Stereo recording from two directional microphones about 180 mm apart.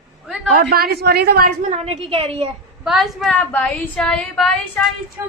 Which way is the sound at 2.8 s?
Centre (ahead or behind).